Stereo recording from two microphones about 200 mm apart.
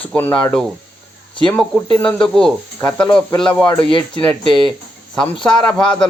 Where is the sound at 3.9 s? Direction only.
25° left (ahead or behind).